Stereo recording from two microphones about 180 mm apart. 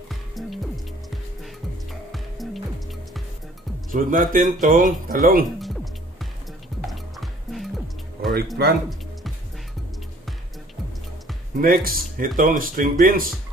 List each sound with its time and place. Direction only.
0.1 s music: centre (ahead or behind)
3.9 s speech: 50° right (ahead or behind)
5.6 s music: centre (ahead or behind)
8.6 s speech: 65° right (ahead or behind)
11.6 s speech: 55° right (ahead or behind)